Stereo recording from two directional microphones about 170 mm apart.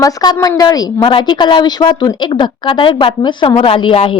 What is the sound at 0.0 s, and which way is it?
A woman's voice, 20° left (ahead or behind).